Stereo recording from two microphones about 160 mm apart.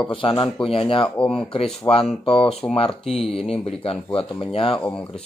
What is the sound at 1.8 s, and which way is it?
Speech, 35° left (ahead or behind).